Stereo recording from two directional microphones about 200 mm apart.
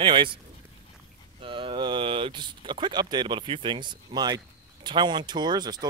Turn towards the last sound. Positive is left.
turn(degrees=-20)  # may be behind; listen again after turning